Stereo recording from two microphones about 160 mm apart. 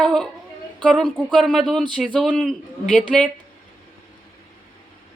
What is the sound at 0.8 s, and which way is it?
A woman's voice, centre (ahead or behind).